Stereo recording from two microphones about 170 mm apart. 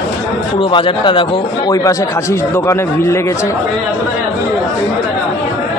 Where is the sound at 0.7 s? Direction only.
30° left (ahead or behind).